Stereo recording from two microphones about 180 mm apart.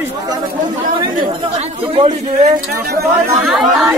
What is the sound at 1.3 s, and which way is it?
Speech, 30° right (ahead or behind).